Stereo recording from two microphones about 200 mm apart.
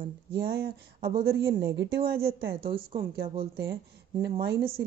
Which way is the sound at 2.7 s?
25° right (ahead or behind).